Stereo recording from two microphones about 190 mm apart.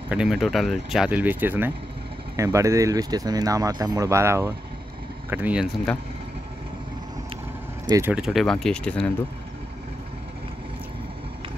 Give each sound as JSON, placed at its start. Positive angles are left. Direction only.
{"t": 0.1, "sound": "speech", "side_deg": 0}
{"t": 7.9, "sound": "speech", "side_deg": -10}